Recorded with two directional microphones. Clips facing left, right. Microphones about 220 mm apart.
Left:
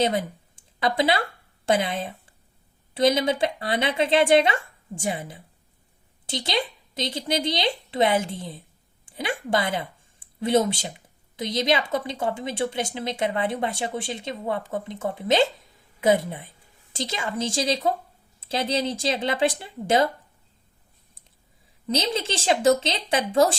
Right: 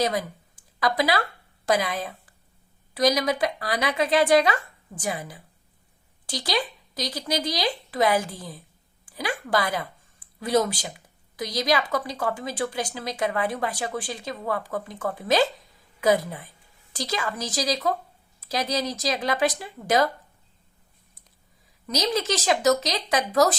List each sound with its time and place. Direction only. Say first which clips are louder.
0.0 s speech: left 2 dB; 25° left (ahead or behind)
21.8 s speech: right 1 dB; 25° left (ahead or behind)